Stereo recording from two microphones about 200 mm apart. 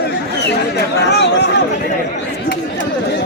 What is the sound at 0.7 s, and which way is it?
Chatter, 55° left (ahead or behind).